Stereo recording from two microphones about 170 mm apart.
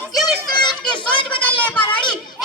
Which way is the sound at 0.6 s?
25° left (ahead or behind).